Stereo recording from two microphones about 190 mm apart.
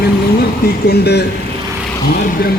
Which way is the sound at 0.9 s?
60° left (ahead or behind).